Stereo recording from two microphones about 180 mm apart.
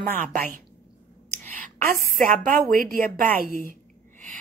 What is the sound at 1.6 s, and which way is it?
A woman's voice, 50° right (ahead or behind).